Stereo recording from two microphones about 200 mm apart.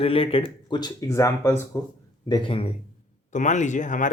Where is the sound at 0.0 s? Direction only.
30° left (ahead or behind).